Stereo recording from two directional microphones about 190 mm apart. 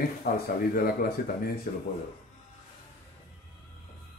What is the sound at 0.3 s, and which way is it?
Speech, 50° left (ahead or behind).